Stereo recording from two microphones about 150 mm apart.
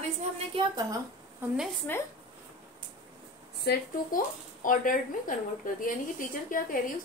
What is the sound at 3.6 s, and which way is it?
Speech, 90° left.